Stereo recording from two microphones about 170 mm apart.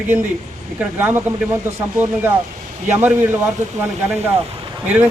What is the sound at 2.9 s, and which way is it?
Speech, 15° right (ahead or behind).